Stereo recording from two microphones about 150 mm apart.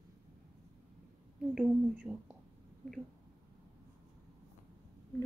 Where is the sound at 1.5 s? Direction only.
5° right (ahead or behind).